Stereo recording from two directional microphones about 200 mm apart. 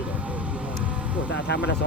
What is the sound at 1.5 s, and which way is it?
Speech, 60° left (ahead or behind).